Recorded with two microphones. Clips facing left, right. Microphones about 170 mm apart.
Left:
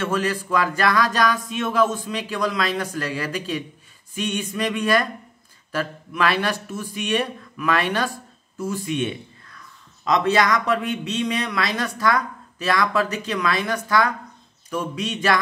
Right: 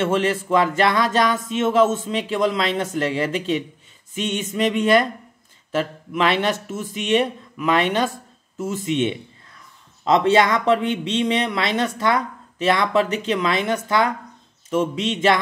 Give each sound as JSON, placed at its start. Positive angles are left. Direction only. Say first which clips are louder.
{"t": 0.0, "sound": "speech", "louder": "right 4 dB", "side_deg": -25}